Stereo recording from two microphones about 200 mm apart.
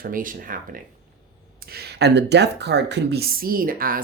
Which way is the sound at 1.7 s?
55° right (ahead or behind).